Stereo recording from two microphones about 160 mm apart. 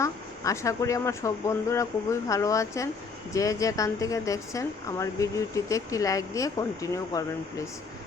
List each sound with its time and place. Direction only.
0.0 s speech: 20° left (ahead or behind)